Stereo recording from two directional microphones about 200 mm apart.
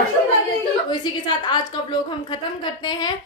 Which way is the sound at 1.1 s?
20° left (ahead or behind).